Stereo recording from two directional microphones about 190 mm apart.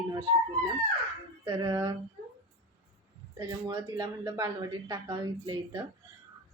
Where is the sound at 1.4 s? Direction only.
10° right (ahead or behind).